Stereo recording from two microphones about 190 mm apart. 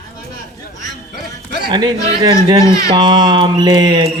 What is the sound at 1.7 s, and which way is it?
Speech, 20° right (ahead or behind).